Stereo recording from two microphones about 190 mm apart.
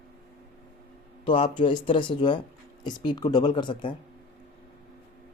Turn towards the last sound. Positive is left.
turn(degrees=25)  # may be behind; listen again after turning